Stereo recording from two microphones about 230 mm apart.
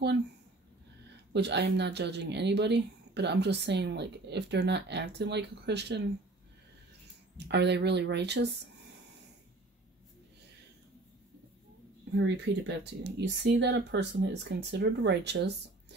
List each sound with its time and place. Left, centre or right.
1.3 s speech: right
7.3 s speech: right
12.2 s speech: right